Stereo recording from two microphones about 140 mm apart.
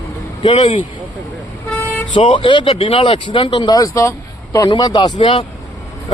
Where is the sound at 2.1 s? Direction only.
40° left (ahead or behind).